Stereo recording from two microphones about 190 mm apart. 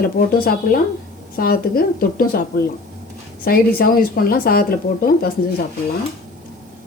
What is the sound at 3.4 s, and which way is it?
Speech, 50° left (ahead or behind).